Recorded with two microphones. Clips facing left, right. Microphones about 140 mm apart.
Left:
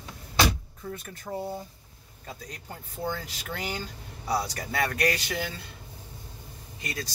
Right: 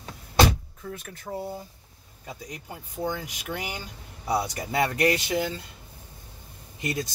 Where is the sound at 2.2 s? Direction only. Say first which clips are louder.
Right 2 dB; 15° right (ahead or behind).